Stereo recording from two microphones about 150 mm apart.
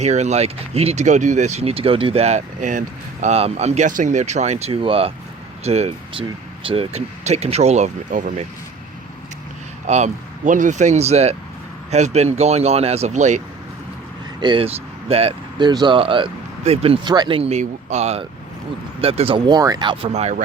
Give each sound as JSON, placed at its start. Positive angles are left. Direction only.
{"t": 0.0, "sound": "speech", "side_deg": -50}
{"t": 9.8, "sound": "speech", "side_deg": -50}
{"t": 14.4, "sound": "speech", "side_deg": -35}